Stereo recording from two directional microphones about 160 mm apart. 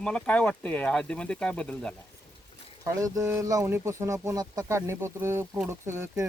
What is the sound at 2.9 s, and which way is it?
Speech, 20° right (ahead or behind).